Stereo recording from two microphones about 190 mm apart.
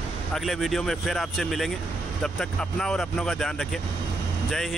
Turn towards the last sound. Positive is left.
turn(degrees=0)  # may be behind; listen again after turning